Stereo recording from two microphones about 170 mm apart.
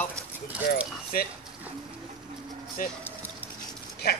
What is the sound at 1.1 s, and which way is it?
Speech, 60° left (ahead or behind).